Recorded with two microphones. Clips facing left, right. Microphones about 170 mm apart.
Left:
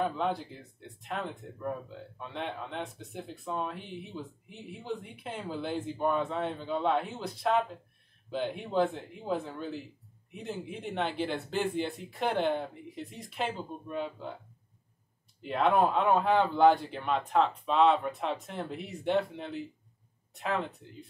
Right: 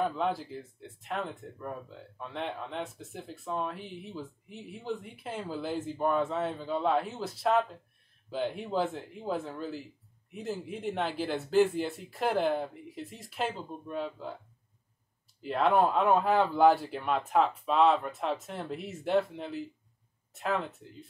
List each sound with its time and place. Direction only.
0.0 s speech: centre (ahead or behind)
15.4 s speech: centre (ahead or behind)